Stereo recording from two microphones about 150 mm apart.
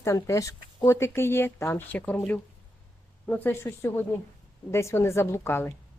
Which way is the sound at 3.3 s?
10° left (ahead or behind).